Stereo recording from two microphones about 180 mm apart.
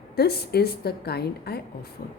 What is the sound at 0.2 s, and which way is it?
A woman's voice, 60° left (ahead or behind).